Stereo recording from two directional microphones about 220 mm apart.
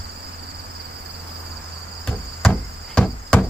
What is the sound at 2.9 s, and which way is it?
Hammer, 5° left (ahead or behind).